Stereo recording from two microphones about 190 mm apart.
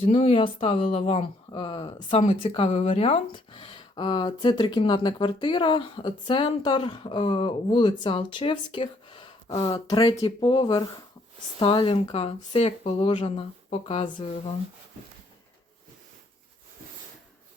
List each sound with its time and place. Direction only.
0.0 s speech: 30° left (ahead or behind)